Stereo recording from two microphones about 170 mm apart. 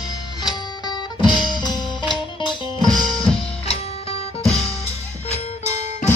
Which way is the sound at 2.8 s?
Centre (ahead or behind).